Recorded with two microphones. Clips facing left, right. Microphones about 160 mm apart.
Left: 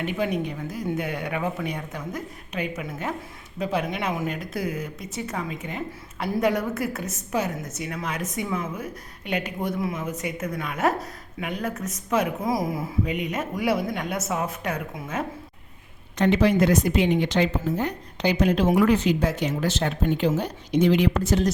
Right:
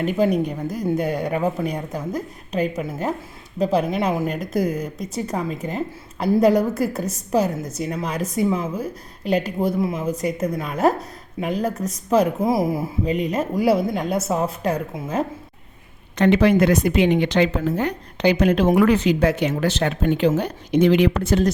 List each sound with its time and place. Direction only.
0.0 s speech: 40° right (ahead or behind)
16.1 s speech: 70° right (ahead or behind)